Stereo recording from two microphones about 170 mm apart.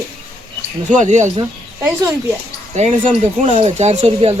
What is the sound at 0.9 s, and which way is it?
Speech, 45° right (ahead or behind).